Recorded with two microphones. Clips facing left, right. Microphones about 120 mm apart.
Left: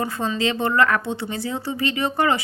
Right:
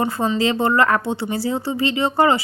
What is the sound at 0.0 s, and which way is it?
A woman's voice, 30° right (ahead or behind).